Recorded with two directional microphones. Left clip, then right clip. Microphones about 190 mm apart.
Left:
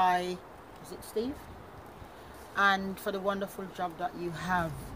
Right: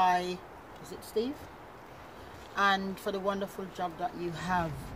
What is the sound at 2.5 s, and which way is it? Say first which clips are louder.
Speech: left 1 dB; 5° right (ahead or behind).